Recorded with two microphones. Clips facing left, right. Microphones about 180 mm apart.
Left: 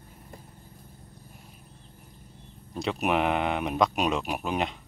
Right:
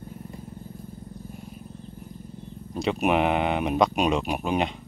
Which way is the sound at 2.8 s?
Centre (ahead or behind).